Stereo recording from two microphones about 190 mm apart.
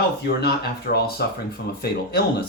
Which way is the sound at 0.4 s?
55° left (ahead or behind).